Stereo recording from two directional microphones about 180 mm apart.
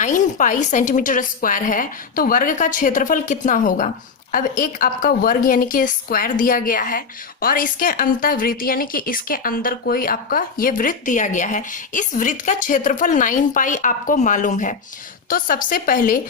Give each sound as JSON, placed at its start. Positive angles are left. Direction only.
{"t": 0.0, "sound": "a woman's voice", "side_deg": 45}